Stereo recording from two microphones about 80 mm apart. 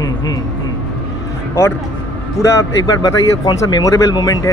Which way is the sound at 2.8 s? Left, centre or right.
Left.